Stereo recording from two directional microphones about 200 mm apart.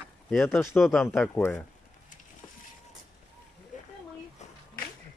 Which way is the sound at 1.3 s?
10° left (ahead or behind).